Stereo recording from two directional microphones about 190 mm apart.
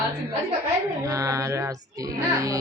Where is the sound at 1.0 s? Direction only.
15° right (ahead or behind).